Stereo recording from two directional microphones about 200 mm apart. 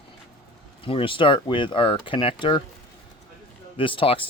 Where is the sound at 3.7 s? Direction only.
25° left (ahead or behind).